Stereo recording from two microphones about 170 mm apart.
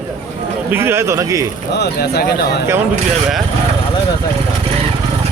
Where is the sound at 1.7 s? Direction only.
75° left (ahead or behind).